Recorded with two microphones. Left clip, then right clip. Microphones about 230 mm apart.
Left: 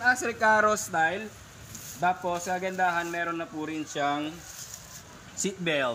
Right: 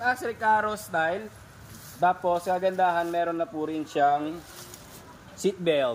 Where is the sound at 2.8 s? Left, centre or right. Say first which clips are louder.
Right 3 dB; left.